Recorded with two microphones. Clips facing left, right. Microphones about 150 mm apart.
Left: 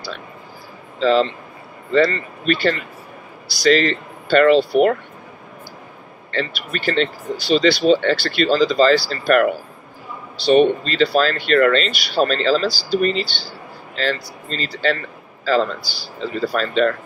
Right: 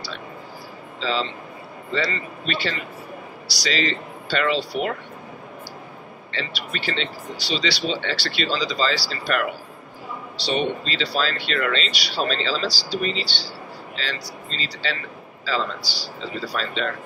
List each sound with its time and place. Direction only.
0.9 s speech: 50° left (ahead or behind)
6.3 s speech: 50° left (ahead or behind)